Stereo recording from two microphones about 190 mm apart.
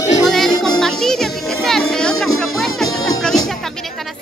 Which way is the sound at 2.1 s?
90° left.